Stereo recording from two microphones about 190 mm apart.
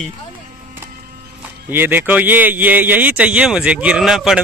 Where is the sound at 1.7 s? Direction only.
10° right (ahead or behind).